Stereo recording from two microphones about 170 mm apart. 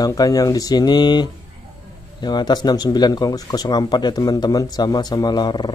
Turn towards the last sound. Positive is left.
turn(degrees=25)  # may be behind; listen again after turning